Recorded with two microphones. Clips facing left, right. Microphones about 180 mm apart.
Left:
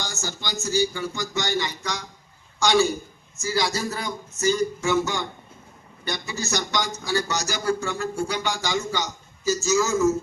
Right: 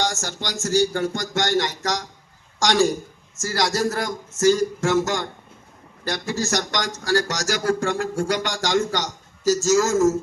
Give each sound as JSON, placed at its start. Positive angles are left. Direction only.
{"t": 0.0, "sound": "speech", "side_deg": -90}